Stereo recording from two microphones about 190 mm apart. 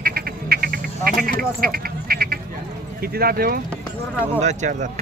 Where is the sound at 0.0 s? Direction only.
55° right (ahead or behind).